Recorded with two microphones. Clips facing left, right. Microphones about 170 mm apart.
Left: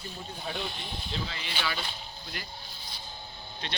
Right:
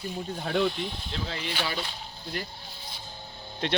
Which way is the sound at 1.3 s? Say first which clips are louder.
Right 6 dB; 45° right (ahead or behind).